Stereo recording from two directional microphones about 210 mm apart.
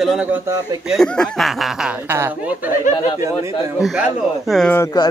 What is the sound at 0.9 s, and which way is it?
Speech, 5° left (ahead or behind).